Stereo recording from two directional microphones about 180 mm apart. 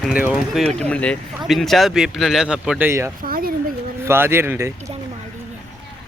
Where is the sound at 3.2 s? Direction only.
55° right (ahead or behind).